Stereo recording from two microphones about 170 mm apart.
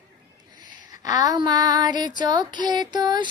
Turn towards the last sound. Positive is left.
turn(degrees=-25)  # may be behind; listen again after turning